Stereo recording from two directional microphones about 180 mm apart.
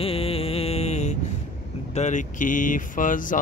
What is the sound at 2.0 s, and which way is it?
Speech, 45° left (ahead or behind).